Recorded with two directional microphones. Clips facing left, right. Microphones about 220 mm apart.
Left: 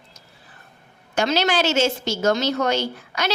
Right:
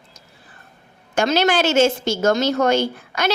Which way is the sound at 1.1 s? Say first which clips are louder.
Right 3 dB; 50° right (ahead or behind).